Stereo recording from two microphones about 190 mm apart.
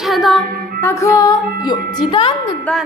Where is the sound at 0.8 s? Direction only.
15° left (ahead or behind).